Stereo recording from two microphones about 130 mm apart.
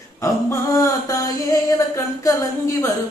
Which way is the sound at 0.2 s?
25° left (ahead or behind).